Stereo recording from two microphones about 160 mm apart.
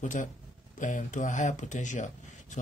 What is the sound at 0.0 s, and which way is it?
Speech, 50° left (ahead or behind).